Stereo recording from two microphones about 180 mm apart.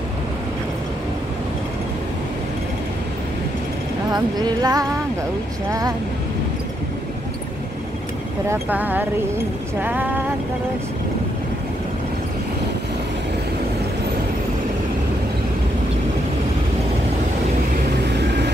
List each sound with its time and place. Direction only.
4.1 s speech: 20° right (ahead or behind)
8.5 s speech: 10° right (ahead or behind)
18.0 s vehicle: 70° right (ahead or behind)